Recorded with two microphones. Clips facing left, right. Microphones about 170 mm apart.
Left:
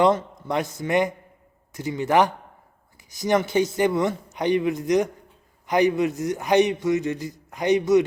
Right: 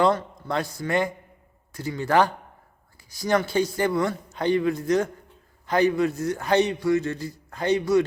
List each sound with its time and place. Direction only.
0.0 s a man's voice: 20° left (ahead or behind)